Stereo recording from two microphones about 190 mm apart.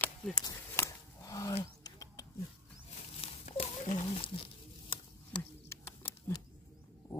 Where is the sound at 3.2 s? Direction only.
35° left (ahead or behind).